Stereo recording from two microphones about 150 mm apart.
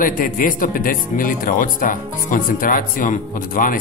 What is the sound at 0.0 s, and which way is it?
Speech, 65° left (ahead or behind).